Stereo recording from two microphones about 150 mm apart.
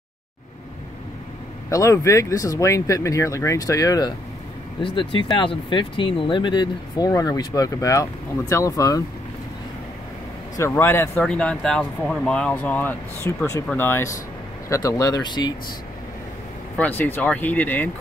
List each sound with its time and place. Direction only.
1.7 s speech: 20° left (ahead or behind)
4.8 s speech: 35° left (ahead or behind)
10.6 s speech: 15° left (ahead or behind)
11.1 s speech: 5° left (ahead or behind); by 15.5 s 30° left (ahead or behind)
16.7 s speech: 10° left (ahead or behind)